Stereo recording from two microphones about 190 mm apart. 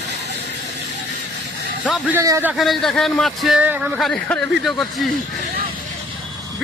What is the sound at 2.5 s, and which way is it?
A man's voice, centre (ahead or behind).